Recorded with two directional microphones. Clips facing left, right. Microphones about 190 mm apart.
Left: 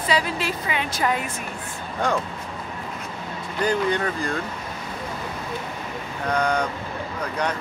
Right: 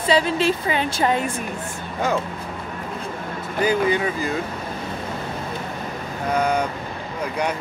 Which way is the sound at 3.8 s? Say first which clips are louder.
Right 2 dB; 5° right (ahead or behind).